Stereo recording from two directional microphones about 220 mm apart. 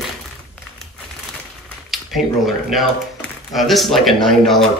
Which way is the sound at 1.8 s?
Centre (ahead or behind).